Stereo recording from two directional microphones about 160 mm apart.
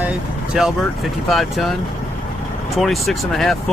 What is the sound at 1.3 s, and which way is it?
Speech, centre (ahead or behind).